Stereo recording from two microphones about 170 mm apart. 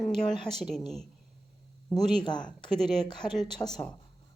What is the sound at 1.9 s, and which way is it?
Speech, 5° left (ahead or behind).